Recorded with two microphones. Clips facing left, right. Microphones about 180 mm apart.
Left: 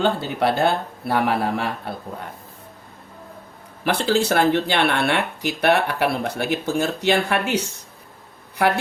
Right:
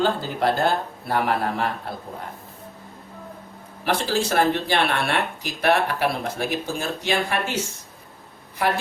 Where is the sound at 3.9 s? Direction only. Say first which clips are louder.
Left 3 dB; 65° left (ahead or behind).